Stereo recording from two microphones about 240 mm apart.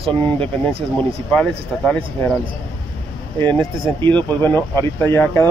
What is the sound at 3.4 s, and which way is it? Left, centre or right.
Speech, centre.